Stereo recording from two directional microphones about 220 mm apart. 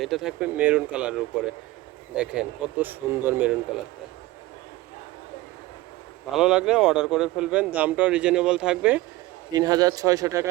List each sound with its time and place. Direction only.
0.0 s speech: centre (ahead or behind)
6.3 s speech: 5° right (ahead or behind)
9.5 s speech: 15° right (ahead or behind)